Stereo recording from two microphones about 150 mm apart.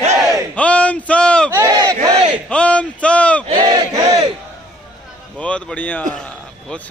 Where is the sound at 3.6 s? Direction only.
30° right (ahead or behind).